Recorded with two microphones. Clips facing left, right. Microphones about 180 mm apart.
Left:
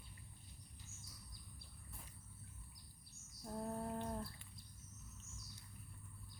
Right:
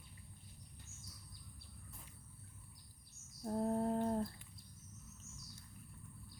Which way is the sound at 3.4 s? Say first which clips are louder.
Right 8 dB; 35° right (ahead or behind).